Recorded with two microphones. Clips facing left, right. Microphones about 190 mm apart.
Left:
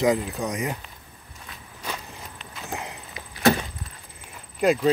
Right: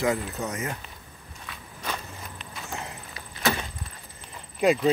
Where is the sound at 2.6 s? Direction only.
15° left (ahead or behind).